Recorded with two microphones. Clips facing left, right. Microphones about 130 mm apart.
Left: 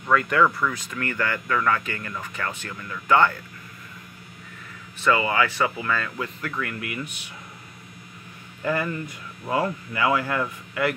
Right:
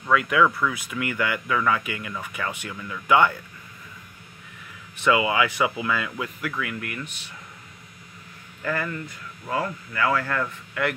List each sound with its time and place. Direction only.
0.0 s speech: 5° right (ahead or behind)
5.0 s speech: 15° right (ahead or behind); by 7.1 s 5° left (ahead or behind)
8.6 s speech: 20° left (ahead or behind); by 11.0 s 5° left (ahead or behind)